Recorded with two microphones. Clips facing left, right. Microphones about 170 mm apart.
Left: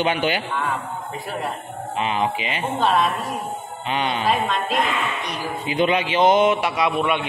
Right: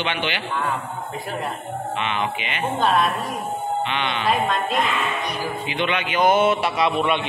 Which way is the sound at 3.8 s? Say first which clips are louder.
Left 2 dB; 40° left (ahead or behind).